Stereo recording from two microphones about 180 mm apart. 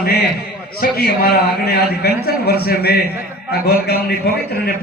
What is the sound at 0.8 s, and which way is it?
A man's voice, 55° left (ahead or behind).